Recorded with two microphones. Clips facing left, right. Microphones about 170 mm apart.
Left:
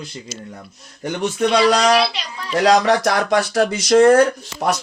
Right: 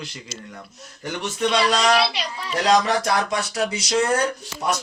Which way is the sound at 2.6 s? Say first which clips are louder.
Left 5 dB; 70° left (ahead or behind).